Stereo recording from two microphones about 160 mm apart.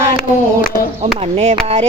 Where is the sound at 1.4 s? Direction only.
40° right (ahead or behind).